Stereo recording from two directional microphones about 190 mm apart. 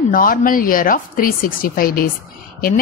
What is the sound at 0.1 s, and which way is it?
A woman's voice, 45° left (ahead or behind).